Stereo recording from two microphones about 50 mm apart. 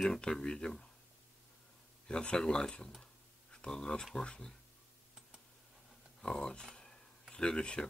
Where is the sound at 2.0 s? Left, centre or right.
Centre.